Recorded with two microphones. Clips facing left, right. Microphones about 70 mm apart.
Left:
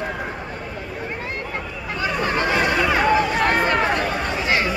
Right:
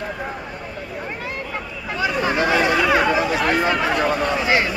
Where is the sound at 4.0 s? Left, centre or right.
Right.